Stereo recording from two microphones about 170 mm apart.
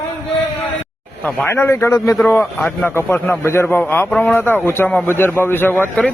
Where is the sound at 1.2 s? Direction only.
10° left (ahead or behind).